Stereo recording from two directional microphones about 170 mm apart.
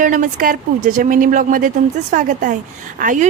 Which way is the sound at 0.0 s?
50° right (ahead or behind).